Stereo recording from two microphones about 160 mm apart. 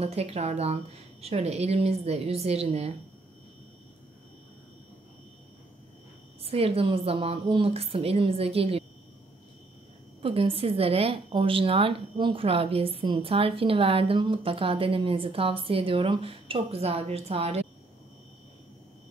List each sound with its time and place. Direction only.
0.0 s a woman's voice: 40° right (ahead or behind)
6.4 s a woman's voice: 40° right (ahead or behind)
10.2 s a woman's voice: 35° right (ahead or behind)